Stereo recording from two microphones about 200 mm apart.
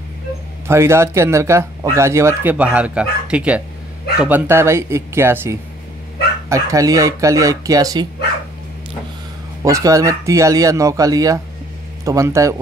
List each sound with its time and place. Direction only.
0.7 s speech: 15° right (ahead or behind)
9.6 s speech: 15° right (ahead or behind)